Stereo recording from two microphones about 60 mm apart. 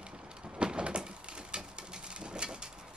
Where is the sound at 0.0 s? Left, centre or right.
Centre.